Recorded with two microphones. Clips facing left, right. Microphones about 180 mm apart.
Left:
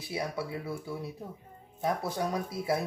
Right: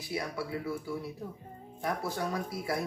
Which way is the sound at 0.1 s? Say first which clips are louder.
Left 1 dB; 20° left (ahead or behind).